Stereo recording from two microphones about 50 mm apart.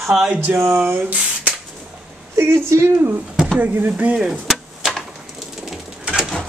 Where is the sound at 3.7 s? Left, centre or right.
Right.